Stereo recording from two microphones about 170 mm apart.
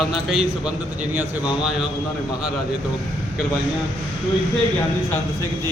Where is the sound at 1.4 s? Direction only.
25° left (ahead or behind).